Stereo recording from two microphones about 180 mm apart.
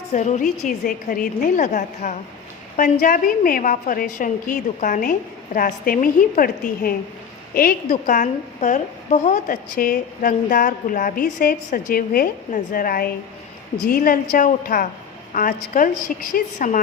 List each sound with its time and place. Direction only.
0.1 s a woman's voice: 40° left (ahead or behind)